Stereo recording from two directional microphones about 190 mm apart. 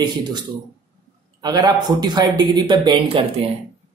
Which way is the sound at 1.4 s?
20° right (ahead or behind).